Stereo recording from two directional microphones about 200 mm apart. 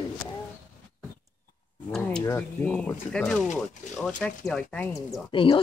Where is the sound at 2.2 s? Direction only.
10° left (ahead or behind).